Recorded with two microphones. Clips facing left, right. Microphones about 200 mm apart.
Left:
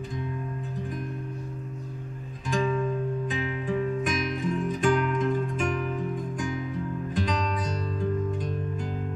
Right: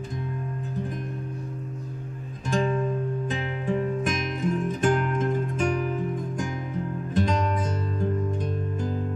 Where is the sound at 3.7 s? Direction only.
45° right (ahead or behind).